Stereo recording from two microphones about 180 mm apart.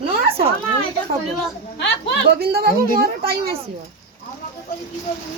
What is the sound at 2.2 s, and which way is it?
Speech, 60° right (ahead or behind).